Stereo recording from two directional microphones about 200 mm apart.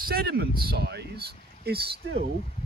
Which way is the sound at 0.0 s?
50° right (ahead or behind).